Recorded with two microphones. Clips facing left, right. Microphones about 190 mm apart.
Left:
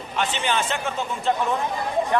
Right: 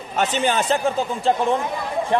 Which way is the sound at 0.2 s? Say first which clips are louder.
Right 4 dB; 40° right (ahead or behind).